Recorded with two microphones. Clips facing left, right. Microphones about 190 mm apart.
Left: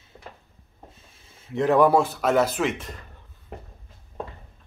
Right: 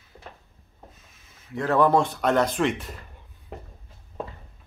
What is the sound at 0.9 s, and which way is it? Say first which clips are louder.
Speech: left 2 dB; 30° left (ahead or behind).